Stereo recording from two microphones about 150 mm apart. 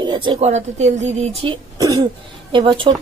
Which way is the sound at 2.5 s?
35° right (ahead or behind).